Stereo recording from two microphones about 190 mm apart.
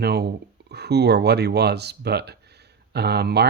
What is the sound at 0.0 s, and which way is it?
Speech, 60° right (ahead or behind).